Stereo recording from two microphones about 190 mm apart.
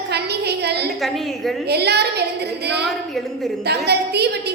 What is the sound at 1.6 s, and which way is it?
A woman's voice, 60° right (ahead or behind).